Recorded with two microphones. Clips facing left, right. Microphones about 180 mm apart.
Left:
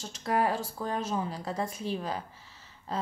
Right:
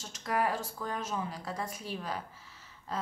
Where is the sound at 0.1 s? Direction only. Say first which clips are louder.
Left 3 dB; 30° left (ahead or behind).